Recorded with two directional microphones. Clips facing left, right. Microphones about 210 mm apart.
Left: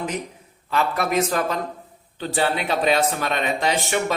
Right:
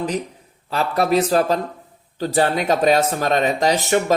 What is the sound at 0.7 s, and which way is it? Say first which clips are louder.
Speech: right 4 dB; 35° right (ahead or behind).